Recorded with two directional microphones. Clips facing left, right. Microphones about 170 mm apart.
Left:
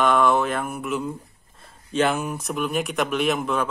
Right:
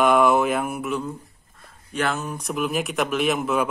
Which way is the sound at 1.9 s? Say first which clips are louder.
Left 4 dB; 20° left (ahead or behind).